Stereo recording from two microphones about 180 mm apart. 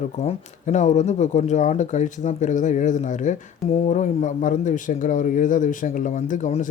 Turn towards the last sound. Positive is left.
turn(degrees=45)  # may be behind; listen again after turning